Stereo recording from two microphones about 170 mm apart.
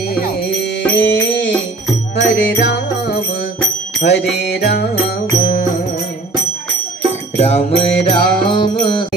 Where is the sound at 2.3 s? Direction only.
90° left.